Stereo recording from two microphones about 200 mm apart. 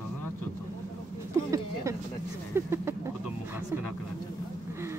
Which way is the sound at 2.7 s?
15° right (ahead or behind).